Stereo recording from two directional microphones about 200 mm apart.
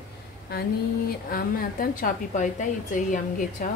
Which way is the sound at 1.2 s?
45° left (ahead or behind).